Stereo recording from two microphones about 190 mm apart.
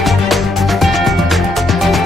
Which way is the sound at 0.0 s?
Centre (ahead or behind).